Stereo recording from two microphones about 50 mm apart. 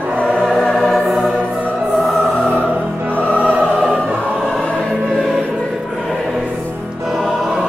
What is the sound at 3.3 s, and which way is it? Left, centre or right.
Music, right.